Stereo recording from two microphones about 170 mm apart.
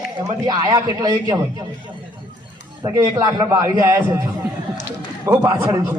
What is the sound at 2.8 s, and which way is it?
A man's voice, 25° right (ahead or behind).